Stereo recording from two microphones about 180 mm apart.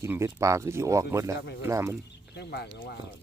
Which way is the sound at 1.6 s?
15° right (ahead or behind).